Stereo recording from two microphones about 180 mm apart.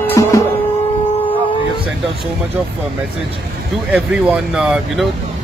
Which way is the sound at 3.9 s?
5° right (ahead or behind).